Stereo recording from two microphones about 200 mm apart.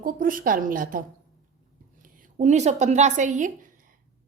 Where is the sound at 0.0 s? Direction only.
45° right (ahead or behind).